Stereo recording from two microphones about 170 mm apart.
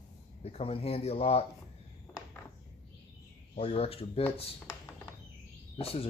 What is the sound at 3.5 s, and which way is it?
Speech, 35° left (ahead or behind).